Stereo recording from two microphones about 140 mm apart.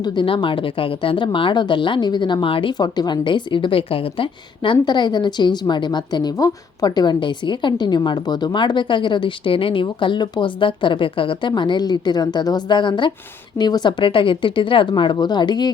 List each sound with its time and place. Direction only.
0.0 s speech: 35° left (ahead or behind)